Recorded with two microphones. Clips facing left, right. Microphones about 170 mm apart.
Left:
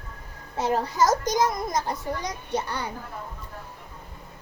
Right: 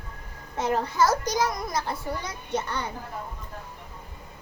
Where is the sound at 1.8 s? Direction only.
15° left (ahead or behind).